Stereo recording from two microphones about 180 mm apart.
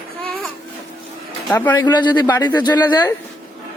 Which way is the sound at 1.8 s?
25° left (ahead or behind).